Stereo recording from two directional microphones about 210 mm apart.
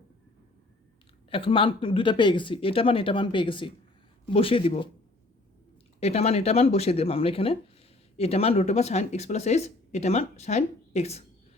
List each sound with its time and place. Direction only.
1.3 s speech: 25° left (ahead or behind)
6.0 s speech: 30° left (ahead or behind)